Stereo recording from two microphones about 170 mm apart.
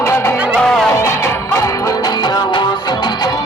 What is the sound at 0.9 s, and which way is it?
Music, 15° left (ahead or behind).